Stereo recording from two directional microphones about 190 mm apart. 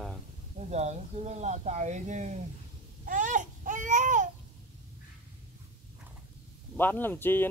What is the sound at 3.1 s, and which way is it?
Babbling, 40° right (ahead or behind).